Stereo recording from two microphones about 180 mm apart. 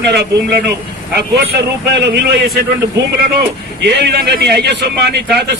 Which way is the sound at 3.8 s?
70° right (ahead or behind).